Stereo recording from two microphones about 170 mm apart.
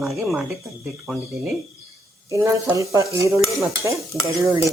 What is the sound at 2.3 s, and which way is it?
Stir, 15° right (ahead or behind).